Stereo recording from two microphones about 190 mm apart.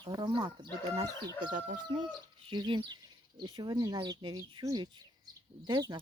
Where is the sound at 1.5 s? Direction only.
45° right (ahead or behind).